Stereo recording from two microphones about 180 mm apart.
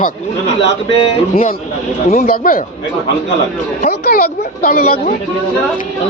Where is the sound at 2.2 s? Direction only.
55° left (ahead or behind).